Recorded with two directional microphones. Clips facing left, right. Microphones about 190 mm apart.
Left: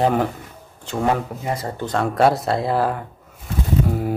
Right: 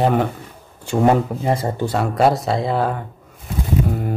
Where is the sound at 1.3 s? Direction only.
30° right (ahead or behind).